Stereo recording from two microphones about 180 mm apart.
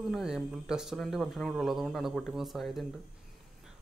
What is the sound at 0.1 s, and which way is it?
Speech, 5° right (ahead or behind).